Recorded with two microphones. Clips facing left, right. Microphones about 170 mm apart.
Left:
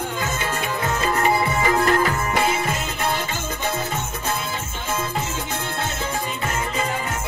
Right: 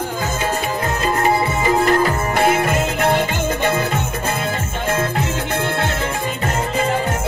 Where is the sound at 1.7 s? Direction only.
35° right (ahead or behind).